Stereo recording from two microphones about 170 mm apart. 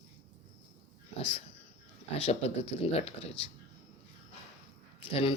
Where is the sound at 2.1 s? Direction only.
35° left (ahead or behind).